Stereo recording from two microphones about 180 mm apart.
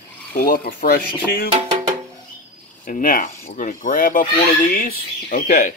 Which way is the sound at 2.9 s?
50° left (ahead or behind).